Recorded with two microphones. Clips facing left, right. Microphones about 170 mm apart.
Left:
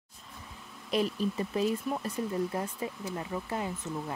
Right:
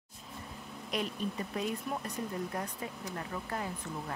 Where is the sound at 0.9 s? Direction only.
30° left (ahead or behind).